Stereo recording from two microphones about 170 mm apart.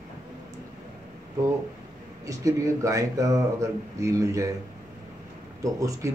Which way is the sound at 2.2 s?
20° right (ahead or behind).